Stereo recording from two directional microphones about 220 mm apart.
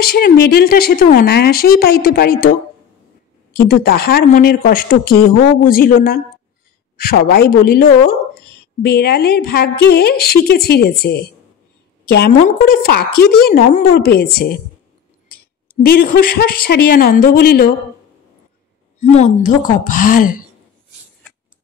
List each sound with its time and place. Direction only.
0.0 s a woman's voice: 45° left (ahead or behind)
3.5 s a woman's voice: 45° left (ahead or behind)
12.4 s a woman's voice: 45° left (ahead or behind)
16.0 s a woman's voice: 40° left (ahead or behind)
18.9 s a woman's voice: 30° left (ahead or behind)